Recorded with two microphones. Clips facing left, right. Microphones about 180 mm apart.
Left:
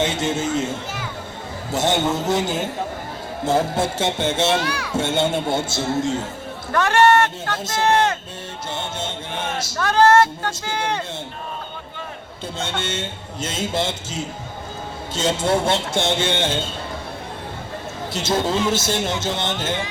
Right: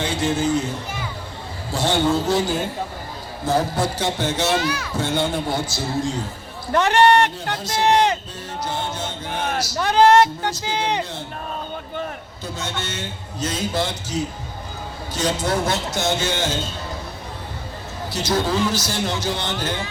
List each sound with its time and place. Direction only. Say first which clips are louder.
0.0 s speech: even; 25° left (ahead or behind)
4.5 s speech: even; 5° right (ahead or behind)
4.9 s speech: left 3 dB; 25° left (ahead or behind)
6.7 s speech: even; 20° right (ahead or behind)
9.0 s a sound: right 1 dB; 25° left (ahead or behind)
9.7 s speech: right 1 dB; 15° right (ahead or behind)
12.5 s speech: left 3 dB; 25° left (ahead or behind)
18.1 s speech: even; 25° left (ahead or behind)